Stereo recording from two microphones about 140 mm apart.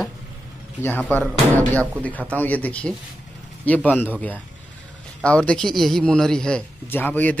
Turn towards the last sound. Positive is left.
turn(degrees=10)  # may be behind; listen again after turning